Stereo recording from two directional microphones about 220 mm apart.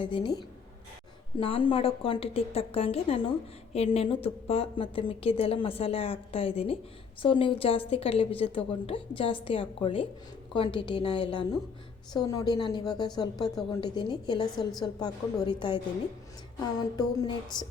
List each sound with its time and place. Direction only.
0.0 s a woman's voice: 20° left (ahead or behind)
17.0 s a woman's voice: 20° left (ahead or behind)